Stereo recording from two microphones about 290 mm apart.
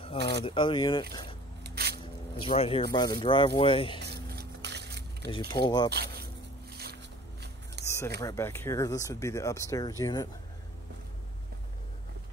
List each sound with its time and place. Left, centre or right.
0.0 s a sound: centre
0.5 s speech: centre
1.6 s squish: right
2.4 s speech: centre
4.0 s vehicle: right
5.5 s speech: centre
6.7 s boat: right
7.8 s a sound: centre
8.2 s speech: centre